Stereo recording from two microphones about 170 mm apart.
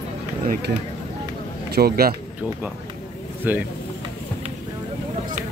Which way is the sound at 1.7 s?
65° right (ahead or behind).